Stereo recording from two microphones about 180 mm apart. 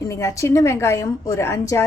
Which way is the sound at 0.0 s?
15° left (ahead or behind).